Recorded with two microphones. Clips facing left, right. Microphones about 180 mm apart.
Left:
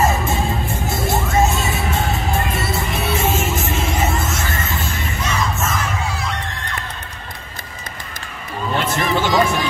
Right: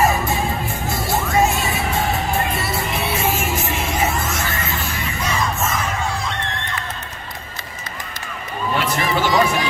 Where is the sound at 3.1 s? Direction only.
20° left (ahead or behind).